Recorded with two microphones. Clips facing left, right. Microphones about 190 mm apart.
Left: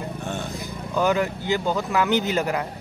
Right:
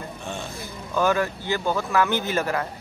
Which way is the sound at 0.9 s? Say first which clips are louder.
Left 1 dB; 15° left (ahead or behind).